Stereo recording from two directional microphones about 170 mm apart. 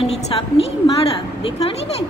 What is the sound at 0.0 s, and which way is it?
Speech, 35° left (ahead or behind).